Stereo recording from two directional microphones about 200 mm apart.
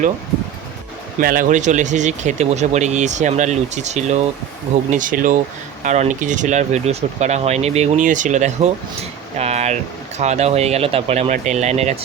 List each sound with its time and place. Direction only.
1.2 s speech: 45° right (ahead or behind)
9.4 s a sound: 35° right (ahead or behind)
10.2 s speech: 35° right (ahead or behind)